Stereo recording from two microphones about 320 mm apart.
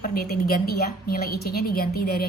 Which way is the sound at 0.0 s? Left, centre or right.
Left.